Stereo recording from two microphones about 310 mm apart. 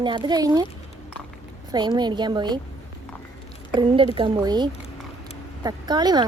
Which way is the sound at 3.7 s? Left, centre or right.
Centre.